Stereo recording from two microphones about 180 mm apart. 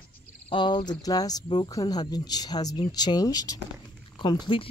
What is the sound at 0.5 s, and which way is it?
Speech, 25° left (ahead or behind).